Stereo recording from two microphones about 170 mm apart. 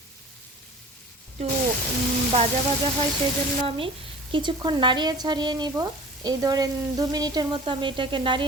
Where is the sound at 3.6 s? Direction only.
30° right (ahead or behind).